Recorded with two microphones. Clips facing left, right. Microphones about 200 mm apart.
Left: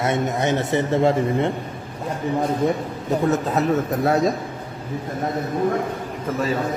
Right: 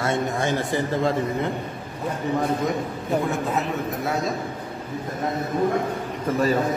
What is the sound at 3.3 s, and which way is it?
Speech, 40° left (ahead or behind).